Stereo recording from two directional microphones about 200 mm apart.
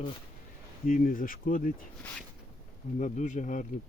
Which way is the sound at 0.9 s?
40° left (ahead or behind).